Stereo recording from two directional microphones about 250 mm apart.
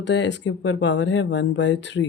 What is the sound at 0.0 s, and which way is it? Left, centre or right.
Speech, left.